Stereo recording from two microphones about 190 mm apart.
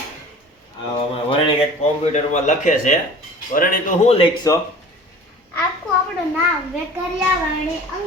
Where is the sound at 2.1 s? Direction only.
40° left (ahead or behind).